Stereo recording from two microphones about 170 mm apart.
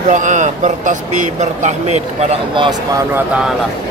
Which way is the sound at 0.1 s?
45° right (ahead or behind).